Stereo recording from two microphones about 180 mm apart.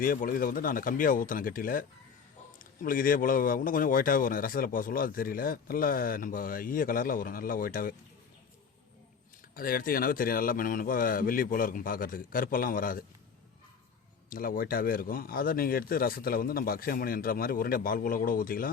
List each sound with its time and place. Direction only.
0.0 s a man's voice: 50° left (ahead or behind)
9.6 s a man's voice: 55° left (ahead or behind)
14.3 s a man's voice: 50° left (ahead or behind)